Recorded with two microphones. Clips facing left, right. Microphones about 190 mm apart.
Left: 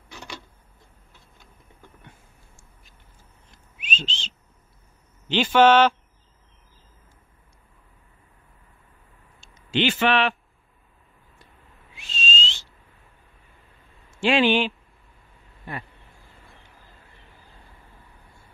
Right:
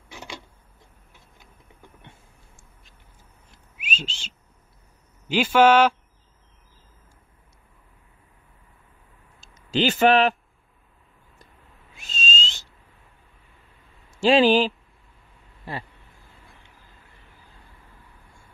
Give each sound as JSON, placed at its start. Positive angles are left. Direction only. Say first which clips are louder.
{"t": 2.0, "sound": "a sound", "louder": "even", "side_deg": -25}
{"t": 3.5, "sound": "bird", "louder": "even", "side_deg": -10}
{"t": 5.3, "sound": "speech", "louder": "even", "side_deg": -5}
{"t": 9.4, "sound": "speech", "louder": "right 1 dB", "side_deg": -40}
{"t": 11.9, "sound": "whistle", "louder": "even", "side_deg": -45}
{"t": 14.1, "sound": "speech", "louder": "right 3 dB", "side_deg": -35}